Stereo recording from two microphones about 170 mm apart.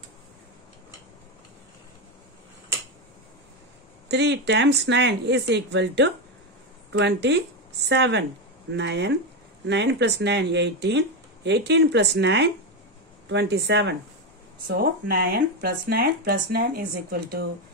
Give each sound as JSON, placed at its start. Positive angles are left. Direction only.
{"t": 4.1, "sound": "speech", "side_deg": -90}
{"t": 14.7, "sound": "speech", "side_deg": -65}